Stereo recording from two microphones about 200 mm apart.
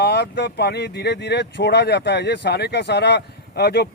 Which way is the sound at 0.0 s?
55° left (ahead or behind).